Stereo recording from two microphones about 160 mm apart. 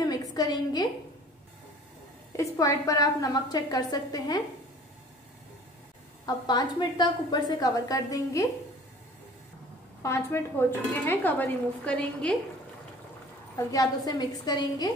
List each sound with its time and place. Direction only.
0.0 s a sound: 25° left (ahead or behind)
2.3 s a woman's voice: 20° left (ahead or behind)
6.2 s a woman's voice: 25° left (ahead or behind)
10.0 s speech: 15° left (ahead or behind)
13.7 s a woman's voice: 25° left (ahead or behind)